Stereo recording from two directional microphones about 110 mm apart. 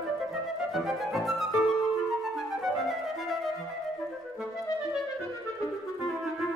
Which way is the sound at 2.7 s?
Centre (ahead or behind).